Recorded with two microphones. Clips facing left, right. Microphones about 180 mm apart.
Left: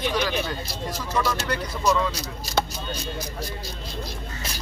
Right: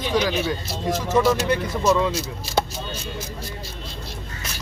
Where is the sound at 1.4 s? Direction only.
20° right (ahead or behind).